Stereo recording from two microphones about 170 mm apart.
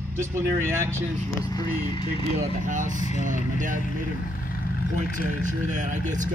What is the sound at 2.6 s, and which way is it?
Speech, 50° right (ahead or behind).